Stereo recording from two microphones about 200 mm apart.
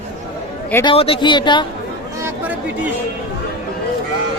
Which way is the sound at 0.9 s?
25° left (ahead or behind).